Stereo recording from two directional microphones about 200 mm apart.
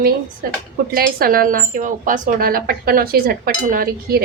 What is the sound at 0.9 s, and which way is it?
Speech, 45° right (ahead or behind).